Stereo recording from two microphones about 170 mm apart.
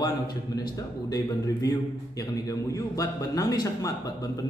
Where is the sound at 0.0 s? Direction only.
25° left (ahead or behind).